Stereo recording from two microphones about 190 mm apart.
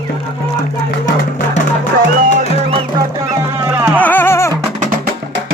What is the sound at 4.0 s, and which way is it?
Music, 10° left (ahead or behind).